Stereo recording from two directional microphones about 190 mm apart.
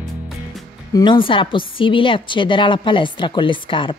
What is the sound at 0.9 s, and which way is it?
A woman's voice, 25° left (ahead or behind).